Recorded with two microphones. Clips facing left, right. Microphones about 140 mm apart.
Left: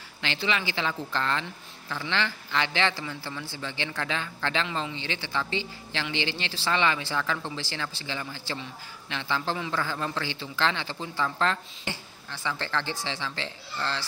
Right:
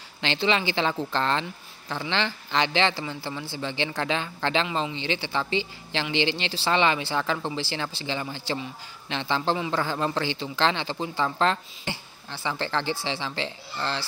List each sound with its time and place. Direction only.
0.2 s a man's voice: 25° right (ahead or behind)